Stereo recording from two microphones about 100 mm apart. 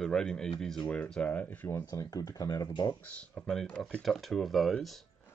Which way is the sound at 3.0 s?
15° left (ahead or behind).